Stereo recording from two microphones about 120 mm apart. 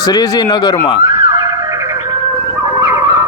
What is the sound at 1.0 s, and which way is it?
Siren, 25° right (ahead or behind).